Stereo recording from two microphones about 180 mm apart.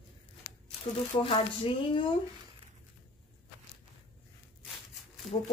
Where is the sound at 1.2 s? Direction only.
30° left (ahead or behind).